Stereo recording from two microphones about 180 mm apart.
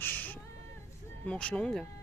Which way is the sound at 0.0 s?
10° left (ahead or behind).